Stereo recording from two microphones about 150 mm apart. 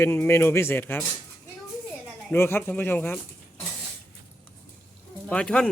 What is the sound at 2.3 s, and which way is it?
Speech, 15° left (ahead or behind).